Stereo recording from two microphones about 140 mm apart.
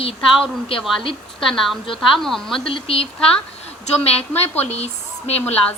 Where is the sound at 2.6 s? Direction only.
40° left (ahead or behind).